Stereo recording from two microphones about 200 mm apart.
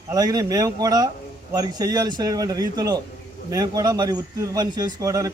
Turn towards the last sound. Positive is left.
turn(degrees=-15)  # may be behind; listen again after turning